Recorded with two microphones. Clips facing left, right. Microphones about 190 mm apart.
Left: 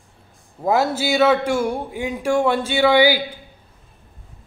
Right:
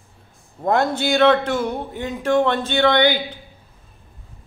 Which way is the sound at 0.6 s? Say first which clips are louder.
Even; 5° left (ahead or behind).